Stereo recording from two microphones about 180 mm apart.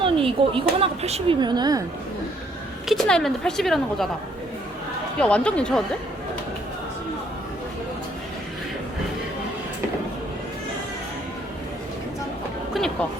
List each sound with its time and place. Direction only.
0.0 s speech: 30° right (ahead or behind)
1.4 s a woman's voice: 25° right (ahead or behind)
2.8 s a woman's voice: centre (ahead or behind)
5.2 s speech: 5° left (ahead or behind)
12.7 s music: 5° left (ahead or behind)